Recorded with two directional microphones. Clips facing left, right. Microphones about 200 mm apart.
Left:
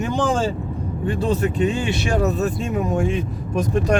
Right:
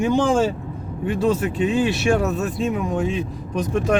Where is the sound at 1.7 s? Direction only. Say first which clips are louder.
Right 3 dB; centre (ahead or behind).